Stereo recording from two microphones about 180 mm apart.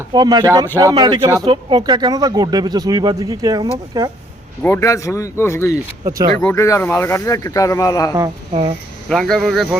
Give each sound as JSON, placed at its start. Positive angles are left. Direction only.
{"t": 0.1, "sound": "speech", "side_deg": -25}
{"t": 4.6, "sound": "speech", "side_deg": 15}
{"t": 9.0, "sound": "speech", "side_deg": 5}